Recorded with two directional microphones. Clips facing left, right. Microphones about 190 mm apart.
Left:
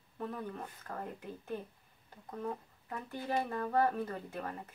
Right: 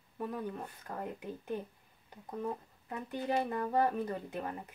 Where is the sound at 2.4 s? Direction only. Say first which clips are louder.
Left 1 dB; 20° right (ahead or behind).